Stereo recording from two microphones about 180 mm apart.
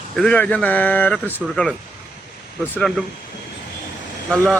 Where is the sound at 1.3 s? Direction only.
Centre (ahead or behind).